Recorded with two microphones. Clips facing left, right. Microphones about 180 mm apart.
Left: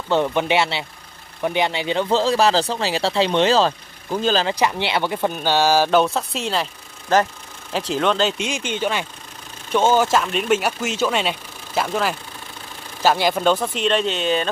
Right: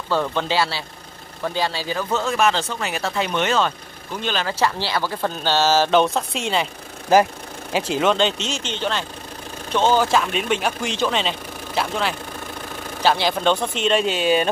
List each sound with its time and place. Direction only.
0.1 s speech: 15° left (ahead or behind); by 4.5 s 35° left (ahead or behind)
4.5 s speech: 20° left (ahead or behind); by 14.5 s 10° right (ahead or behind)